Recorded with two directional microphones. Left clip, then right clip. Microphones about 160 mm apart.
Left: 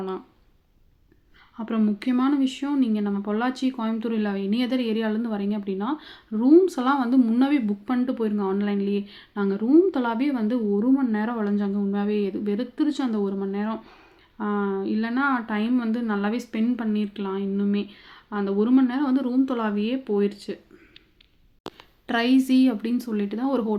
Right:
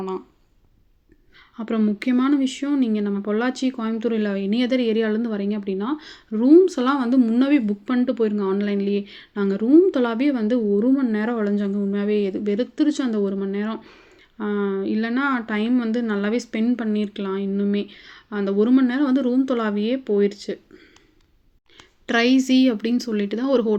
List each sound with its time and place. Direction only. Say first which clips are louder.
1.5 s speech: right 3 dB; 20° right (ahead or behind)
22.0 s speech: right 3 dB; 15° right (ahead or behind)